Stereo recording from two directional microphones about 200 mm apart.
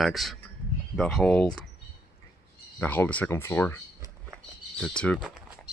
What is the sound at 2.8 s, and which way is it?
Speech, 10° left (ahead or behind).